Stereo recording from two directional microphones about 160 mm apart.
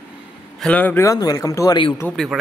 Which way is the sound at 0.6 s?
10° left (ahead or behind).